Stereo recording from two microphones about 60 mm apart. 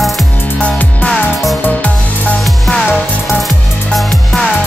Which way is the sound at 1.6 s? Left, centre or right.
Left.